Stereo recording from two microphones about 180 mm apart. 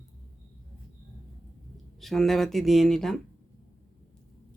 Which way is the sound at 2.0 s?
Centre (ahead or behind).